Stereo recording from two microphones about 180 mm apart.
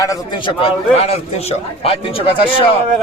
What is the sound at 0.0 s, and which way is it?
A man's voice, 20° left (ahead or behind).